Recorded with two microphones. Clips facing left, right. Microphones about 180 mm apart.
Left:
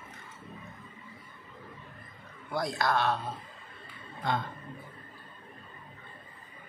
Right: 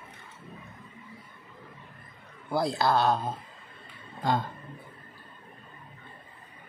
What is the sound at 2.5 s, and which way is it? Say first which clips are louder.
Speech: right 4 dB; 30° right (ahead or behind).